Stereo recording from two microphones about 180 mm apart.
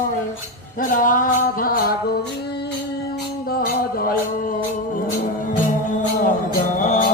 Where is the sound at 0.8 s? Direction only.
50° left (ahead or behind).